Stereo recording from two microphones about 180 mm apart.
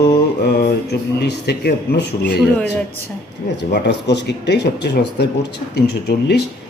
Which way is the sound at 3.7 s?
70° left (ahead or behind).